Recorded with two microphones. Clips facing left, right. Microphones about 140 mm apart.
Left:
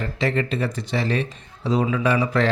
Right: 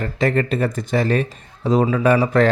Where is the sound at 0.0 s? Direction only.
50° right (ahead or behind).